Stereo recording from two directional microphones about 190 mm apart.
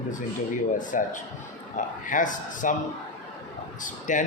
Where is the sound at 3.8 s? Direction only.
40° left (ahead or behind).